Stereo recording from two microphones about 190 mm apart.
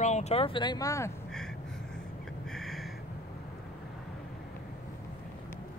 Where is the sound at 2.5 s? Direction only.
Centre (ahead or behind).